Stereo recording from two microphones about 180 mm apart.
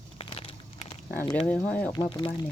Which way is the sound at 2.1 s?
30° left (ahead or behind).